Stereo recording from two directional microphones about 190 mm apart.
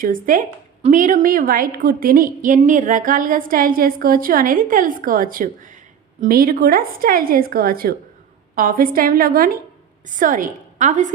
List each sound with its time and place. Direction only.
0.0 s a woman's voice: 45° right (ahead or behind)